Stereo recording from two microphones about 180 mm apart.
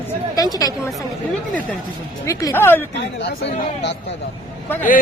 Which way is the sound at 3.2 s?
70° left (ahead or behind).